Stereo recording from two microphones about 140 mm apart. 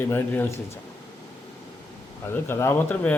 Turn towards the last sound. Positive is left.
turn(degrees=15)  # may be behind; listen again after turning